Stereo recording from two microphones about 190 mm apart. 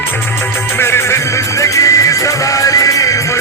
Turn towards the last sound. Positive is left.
turn(degrees=15)  # may be behind; listen again after turning